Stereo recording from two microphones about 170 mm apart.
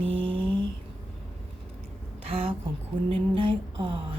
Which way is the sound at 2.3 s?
35° right (ahead or behind).